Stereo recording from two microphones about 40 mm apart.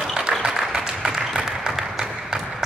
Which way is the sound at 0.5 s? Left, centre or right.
Centre.